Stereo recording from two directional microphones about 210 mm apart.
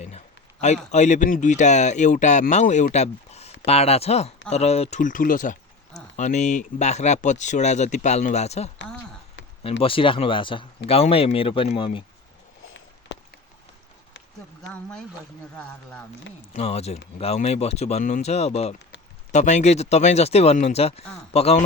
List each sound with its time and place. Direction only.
0.6 s speech: 35° left (ahead or behind)
9.8 s speech: 25° left (ahead or behind)
14.7 s speech: 5° left (ahead or behind)
16.5 s speech: 30° left (ahead or behind)